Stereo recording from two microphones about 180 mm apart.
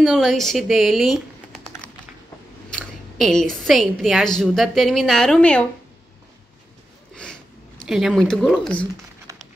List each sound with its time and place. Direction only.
0.0 s speech: centre (ahead or behind)
2.7 s a woman's voice: centre (ahead or behind)
7.8 s a woman's voice: centre (ahead or behind)
9.3 s a sound: 15° right (ahead or behind)